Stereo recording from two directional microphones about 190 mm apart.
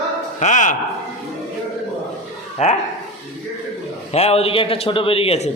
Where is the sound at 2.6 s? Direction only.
35° left (ahead or behind).